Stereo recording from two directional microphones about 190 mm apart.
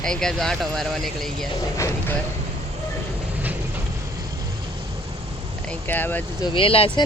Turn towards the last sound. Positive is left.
turn(degrees=30)  # may be behind; listen again after turning